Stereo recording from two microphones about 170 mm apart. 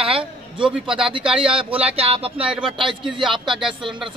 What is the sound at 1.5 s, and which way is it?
Speech, 35° right (ahead or behind).